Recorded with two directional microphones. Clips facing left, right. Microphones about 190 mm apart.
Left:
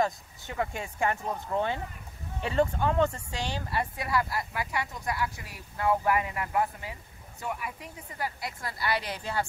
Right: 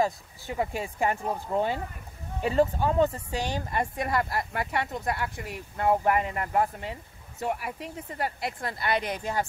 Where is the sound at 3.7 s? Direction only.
50° right (ahead or behind).